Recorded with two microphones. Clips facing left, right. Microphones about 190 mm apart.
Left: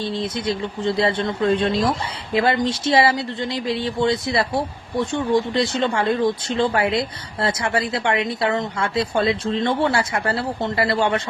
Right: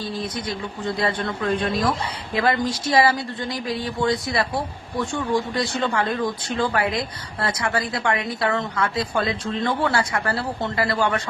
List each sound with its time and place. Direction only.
0.0 s speech: 25° left (ahead or behind)